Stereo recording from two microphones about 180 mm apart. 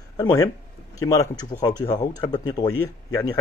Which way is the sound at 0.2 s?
15° left (ahead or behind).